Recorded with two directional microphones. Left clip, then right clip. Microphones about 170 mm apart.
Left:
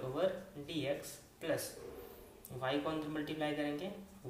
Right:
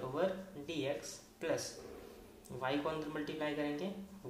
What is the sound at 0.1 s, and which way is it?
Speech, 40° right (ahead or behind).